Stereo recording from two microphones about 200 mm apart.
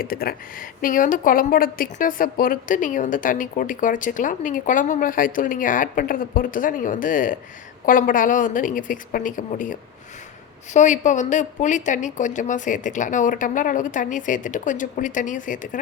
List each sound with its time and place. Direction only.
0.0 s a woman's voice: 45° left (ahead or behind)
10.8 s a woman's voice: 35° left (ahead or behind)